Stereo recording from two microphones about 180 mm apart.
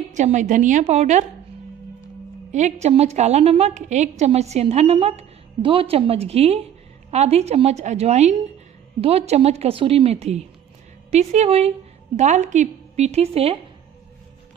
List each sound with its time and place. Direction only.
0.1 s a woman's voice: 40° right (ahead or behind)
2.5 s a woman's voice: 40° right (ahead or behind)